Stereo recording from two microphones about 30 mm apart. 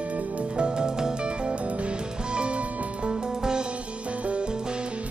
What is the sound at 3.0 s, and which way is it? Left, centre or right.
Music, right.